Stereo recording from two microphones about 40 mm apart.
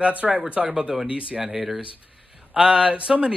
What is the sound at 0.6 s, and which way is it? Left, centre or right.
Speech, right.